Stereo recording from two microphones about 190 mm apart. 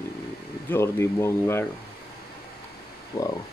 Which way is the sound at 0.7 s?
10° left (ahead or behind).